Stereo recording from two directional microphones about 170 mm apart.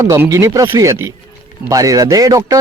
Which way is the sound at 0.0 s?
20° right (ahead or behind).